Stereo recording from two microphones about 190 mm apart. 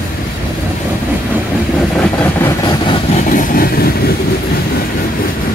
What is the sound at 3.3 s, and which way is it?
Train, 50° left (ahead or behind).